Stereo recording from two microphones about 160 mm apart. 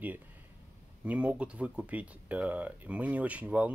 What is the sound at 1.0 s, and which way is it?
Speech, 10° right (ahead or behind).